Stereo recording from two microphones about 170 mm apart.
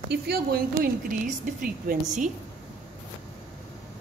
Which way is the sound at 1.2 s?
50° right (ahead or behind).